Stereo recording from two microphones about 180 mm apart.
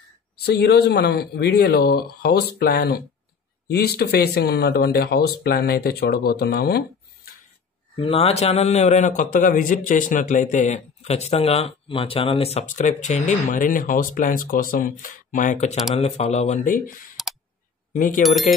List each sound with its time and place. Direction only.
0.4 s speech: 60° left (ahead or behind)
7.9 s a man's voice: 30° left (ahead or behind); by 16.9 s 45° left (ahead or behind)
17.2 s clicking: centre (ahead or behind)
17.9 s a man's voice: 45° left (ahead or behind)
18.2 s speech: centre (ahead or behind)